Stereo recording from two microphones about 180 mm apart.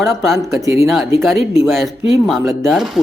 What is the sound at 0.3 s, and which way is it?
Speech, 15° right (ahead or behind).